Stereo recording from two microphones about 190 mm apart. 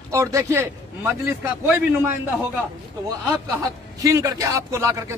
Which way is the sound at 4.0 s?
15° right (ahead or behind).